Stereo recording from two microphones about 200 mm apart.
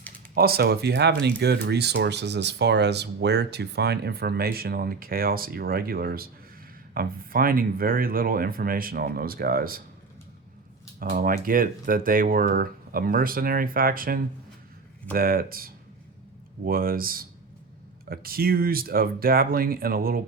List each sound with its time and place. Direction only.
0.3 s speech: 50° right (ahead or behind)
11.1 s speech: 45° right (ahead or behind)